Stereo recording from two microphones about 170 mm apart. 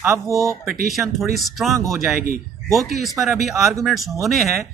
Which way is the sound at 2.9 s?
Centre (ahead or behind).